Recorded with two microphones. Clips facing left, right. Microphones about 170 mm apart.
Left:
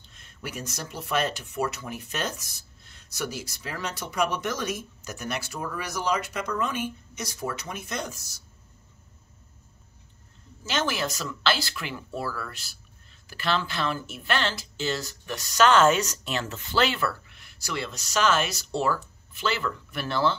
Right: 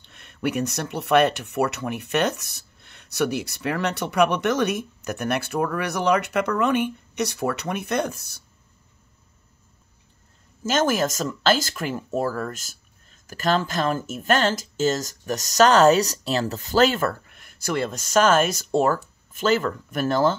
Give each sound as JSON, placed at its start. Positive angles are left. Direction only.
{"t": 0.0, "sound": "speech", "side_deg": -65}
{"t": 10.6, "sound": "speech", "side_deg": -45}